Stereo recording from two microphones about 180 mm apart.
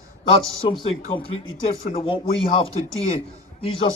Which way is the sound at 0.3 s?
30° left (ahead or behind).